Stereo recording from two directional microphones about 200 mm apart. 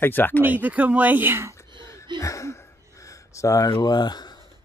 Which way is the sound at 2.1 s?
15° left (ahead or behind).